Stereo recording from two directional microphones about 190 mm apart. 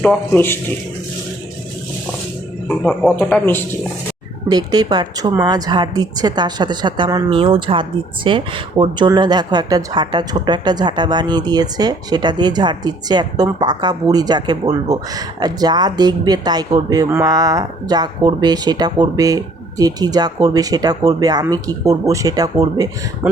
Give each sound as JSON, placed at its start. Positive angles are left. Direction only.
{"t": 0.0, "sound": "speech", "side_deg": 5}
{"t": 2.6, "sound": "speech", "side_deg": 5}
{"t": 4.4, "sound": "a woman's voice", "side_deg": -20}